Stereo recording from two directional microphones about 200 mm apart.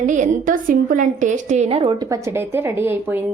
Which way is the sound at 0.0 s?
40° right (ahead or behind).